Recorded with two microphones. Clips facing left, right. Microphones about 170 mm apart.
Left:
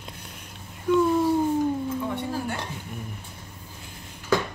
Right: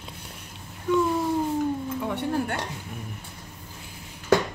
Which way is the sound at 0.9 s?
10° left (ahead or behind).